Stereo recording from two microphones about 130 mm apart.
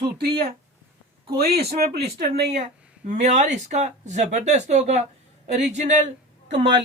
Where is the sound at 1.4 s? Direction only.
55° right (ahead or behind).